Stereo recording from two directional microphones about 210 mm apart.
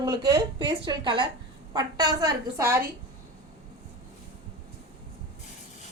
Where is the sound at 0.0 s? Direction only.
20° right (ahead or behind).